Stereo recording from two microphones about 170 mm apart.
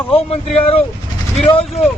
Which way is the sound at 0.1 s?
35° left (ahead or behind).